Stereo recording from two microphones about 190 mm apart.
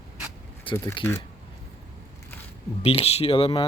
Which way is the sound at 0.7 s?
15° left (ahead or behind).